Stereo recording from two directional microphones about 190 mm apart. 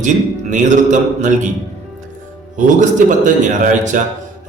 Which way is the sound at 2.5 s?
40° right (ahead or behind).